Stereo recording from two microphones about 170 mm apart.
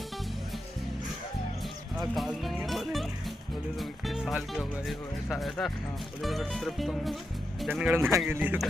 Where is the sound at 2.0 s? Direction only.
Centre (ahead or behind).